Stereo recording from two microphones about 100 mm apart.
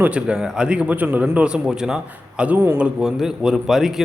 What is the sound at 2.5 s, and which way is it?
Speech, 25° right (ahead or behind).